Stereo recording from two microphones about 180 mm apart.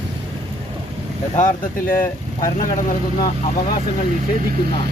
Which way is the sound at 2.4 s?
50° left (ahead or behind).